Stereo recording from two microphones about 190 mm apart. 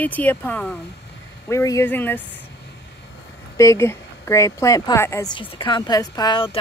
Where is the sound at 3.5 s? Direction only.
15° left (ahead or behind).